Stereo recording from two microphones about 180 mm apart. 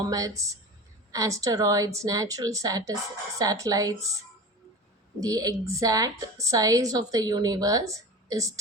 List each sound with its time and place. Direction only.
0.1 s a woman's voice: 20° right (ahead or behind)
5.2 s a woman's voice: 20° right (ahead or behind)